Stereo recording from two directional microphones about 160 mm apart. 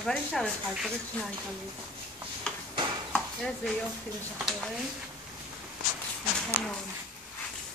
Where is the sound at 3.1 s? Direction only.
5° left (ahead or behind).